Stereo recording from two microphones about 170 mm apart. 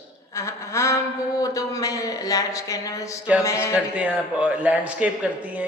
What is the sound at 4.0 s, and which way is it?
Speech, 10° right (ahead or behind).